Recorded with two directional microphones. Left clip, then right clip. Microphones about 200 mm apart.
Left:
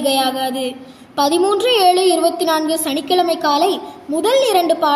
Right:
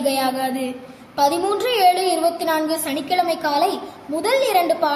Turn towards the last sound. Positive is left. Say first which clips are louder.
# left 3 dB
turn(degrees=30)  # may be behind; listen again after turning